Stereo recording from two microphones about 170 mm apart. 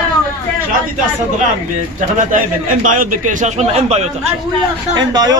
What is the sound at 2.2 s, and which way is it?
A man's voice, 50° right (ahead or behind).